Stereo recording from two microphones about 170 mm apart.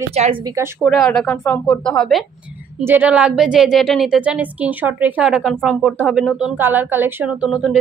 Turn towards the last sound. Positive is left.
turn(degrees=-5)  # may be behind; listen again after turning